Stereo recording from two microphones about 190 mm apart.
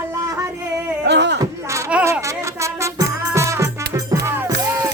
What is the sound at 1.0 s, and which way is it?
Speech, 65° right (ahead or behind).